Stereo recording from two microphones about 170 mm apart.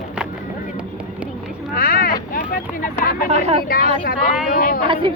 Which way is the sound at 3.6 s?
60° left (ahead or behind).